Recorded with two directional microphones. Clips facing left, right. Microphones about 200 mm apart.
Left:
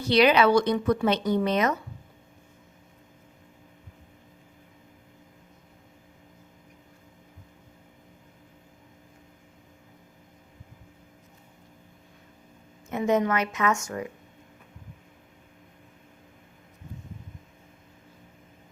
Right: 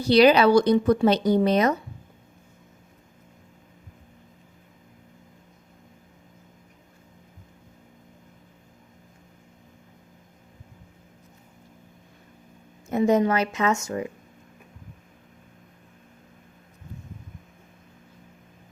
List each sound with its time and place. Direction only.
0.0 s speech: 35° right (ahead or behind)
12.9 s a woman's voice: 35° right (ahead or behind)